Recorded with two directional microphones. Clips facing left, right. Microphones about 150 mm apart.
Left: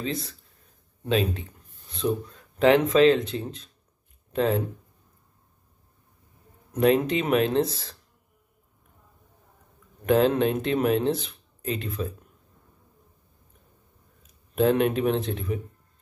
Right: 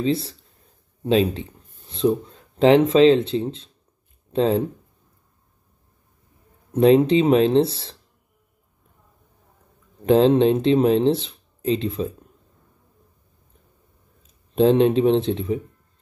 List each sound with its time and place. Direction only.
0.0 s speech: 30° right (ahead or behind)
6.7 s speech: 30° right (ahead or behind)
10.0 s speech: 30° right (ahead or behind)
14.2 s speech: 25° right (ahead or behind)